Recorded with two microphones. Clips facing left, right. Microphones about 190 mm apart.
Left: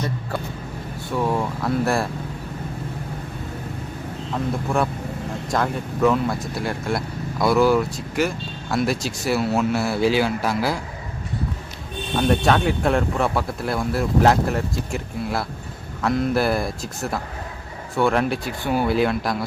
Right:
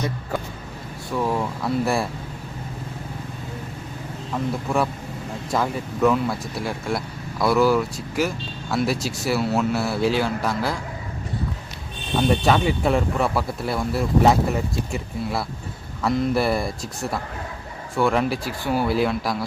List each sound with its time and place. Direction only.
1.1 s speech: centre (ahead or behind)
4.7 s speech: centre (ahead or behind)
12.3 s speech: centre (ahead or behind)